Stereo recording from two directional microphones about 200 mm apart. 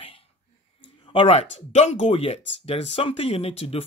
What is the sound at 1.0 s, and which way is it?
Speech, 30° left (ahead or behind).